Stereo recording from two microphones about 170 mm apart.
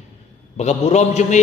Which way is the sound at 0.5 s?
40° left (ahead or behind).